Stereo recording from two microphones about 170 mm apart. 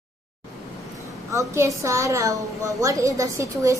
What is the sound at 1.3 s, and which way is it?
A woman's voice, 20° right (ahead or behind).